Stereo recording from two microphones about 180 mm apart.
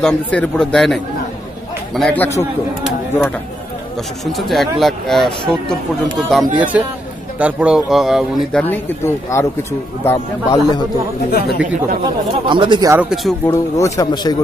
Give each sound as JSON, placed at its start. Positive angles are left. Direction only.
{"t": 0.0, "sound": "speech", "side_deg": 5}
{"t": 4.3, "sound": "speech", "side_deg": 0}
{"t": 8.6, "sound": "a man's voice", "side_deg": 10}
{"t": 11.2, "sound": "speech", "side_deg": 60}
{"t": 12.4, "sound": "speech", "side_deg": -25}
{"t": 13.1, "sound": "speech", "side_deg": 0}
{"t": 13.5, "sound": "speech", "side_deg": 15}